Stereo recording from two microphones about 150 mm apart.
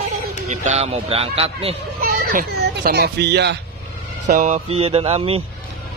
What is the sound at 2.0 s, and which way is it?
A child's voice, 85° right.